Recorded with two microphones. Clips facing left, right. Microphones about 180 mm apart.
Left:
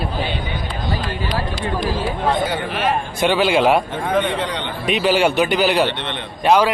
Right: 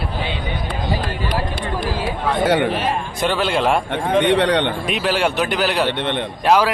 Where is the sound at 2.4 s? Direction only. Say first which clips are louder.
Right 7 dB; 70° right (ahead or behind).